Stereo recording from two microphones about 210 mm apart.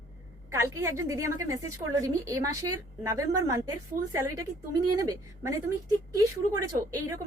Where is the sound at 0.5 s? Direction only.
15° right (ahead or behind).